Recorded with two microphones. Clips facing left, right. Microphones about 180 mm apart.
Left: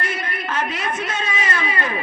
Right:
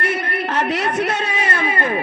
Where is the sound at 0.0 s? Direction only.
65° right (ahead or behind).